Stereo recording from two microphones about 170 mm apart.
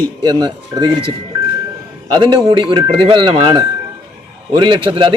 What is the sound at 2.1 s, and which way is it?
Speech, 30° right (ahead or behind).